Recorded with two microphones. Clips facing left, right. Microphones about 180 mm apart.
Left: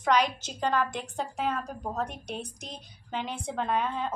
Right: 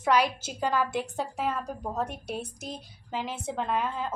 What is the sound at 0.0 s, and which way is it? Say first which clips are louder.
A woman's voice: right 1 dB; 5° right (ahead or behind).